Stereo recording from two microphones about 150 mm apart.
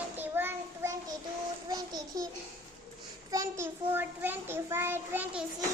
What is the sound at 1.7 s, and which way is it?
Speech, 25° right (ahead or behind).